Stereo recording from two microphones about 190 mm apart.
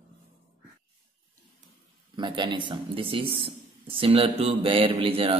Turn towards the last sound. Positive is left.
turn(degrees=-30)  # may be behind; listen again after turning